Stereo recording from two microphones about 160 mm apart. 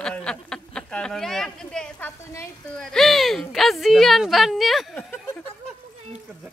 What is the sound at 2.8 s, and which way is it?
Speech, 5° left (ahead or behind).